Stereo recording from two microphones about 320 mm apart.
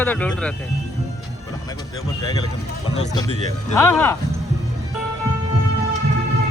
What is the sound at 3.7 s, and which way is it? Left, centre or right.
Speech, centre.